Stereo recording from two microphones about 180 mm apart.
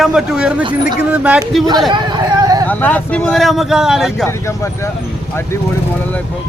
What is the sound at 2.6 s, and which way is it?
Speech, 10° left (ahead or behind).